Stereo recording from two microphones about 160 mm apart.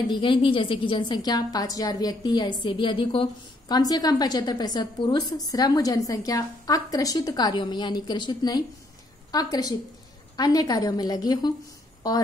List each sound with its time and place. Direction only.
0.1 s a woman's voice: 30° left (ahead or behind)